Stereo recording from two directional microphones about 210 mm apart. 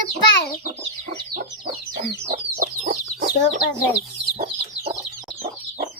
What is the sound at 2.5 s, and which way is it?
Chicken, 35° right (ahead or behind).